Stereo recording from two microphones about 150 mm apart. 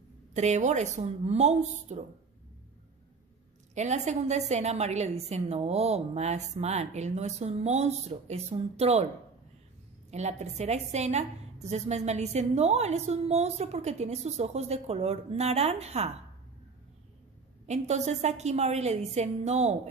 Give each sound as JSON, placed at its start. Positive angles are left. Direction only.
{"t": 0.3, "sound": "a woman's voice", "side_deg": -50}
{"t": 3.7, "sound": "a woman's voice", "side_deg": -50}
{"t": 10.1, "sound": "a woman's voice", "side_deg": -50}
{"t": 17.6, "sound": "a woman's voice", "side_deg": -50}